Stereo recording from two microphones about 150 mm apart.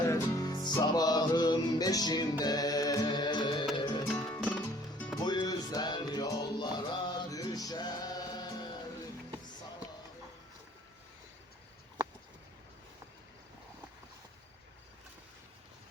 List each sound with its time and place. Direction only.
0.1 s music: 25° left (ahead or behind)
4.1 s music: 5° left (ahead or behind)
5.2 s music: 30° left (ahead or behind)